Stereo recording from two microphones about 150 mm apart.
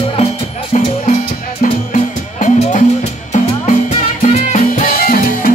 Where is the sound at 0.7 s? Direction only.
50° left (ahead or behind).